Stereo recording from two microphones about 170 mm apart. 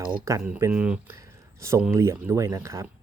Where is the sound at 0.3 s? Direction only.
15° right (ahead or behind).